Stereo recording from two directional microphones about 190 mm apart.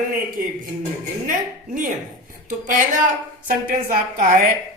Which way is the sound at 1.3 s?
45° right (ahead or behind).